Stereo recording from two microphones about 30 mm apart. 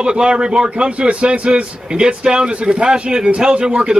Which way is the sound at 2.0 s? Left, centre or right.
Right.